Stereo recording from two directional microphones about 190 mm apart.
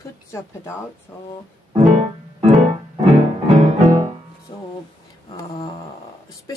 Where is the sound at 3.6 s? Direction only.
40° right (ahead or behind).